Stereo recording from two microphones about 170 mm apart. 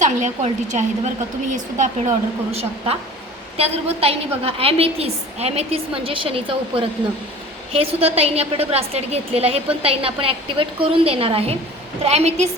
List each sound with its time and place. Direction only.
0.0 s a woman's voice: 45° right (ahead or behind)